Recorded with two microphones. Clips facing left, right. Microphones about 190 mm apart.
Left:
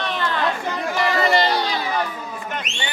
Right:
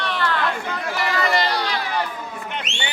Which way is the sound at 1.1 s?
25° left (ahead or behind).